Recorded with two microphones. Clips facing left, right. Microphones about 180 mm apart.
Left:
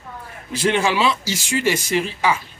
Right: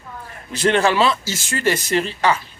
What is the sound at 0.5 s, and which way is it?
A man's voice, 10° left (ahead or behind).